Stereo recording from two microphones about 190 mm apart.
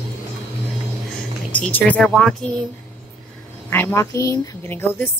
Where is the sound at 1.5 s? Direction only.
5° left (ahead or behind).